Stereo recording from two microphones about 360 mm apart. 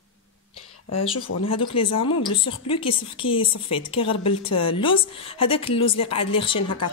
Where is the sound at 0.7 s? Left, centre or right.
Left.